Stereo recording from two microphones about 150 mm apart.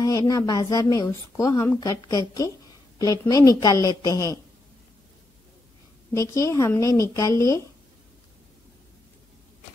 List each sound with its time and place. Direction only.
0.0 s speech: 25° left (ahead or behind)
6.1 s speech: 20° left (ahead or behind)